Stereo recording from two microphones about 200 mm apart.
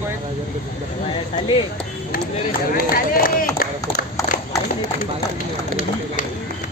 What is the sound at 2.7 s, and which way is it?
Speech, 45° left (ahead or behind).